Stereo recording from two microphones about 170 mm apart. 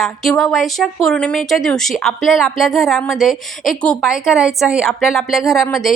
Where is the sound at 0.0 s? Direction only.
Centre (ahead or behind).